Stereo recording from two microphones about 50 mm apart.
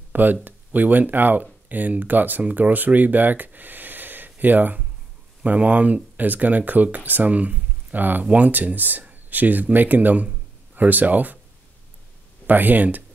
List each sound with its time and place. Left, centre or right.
0.1 s speech: right
12.4 s speech: right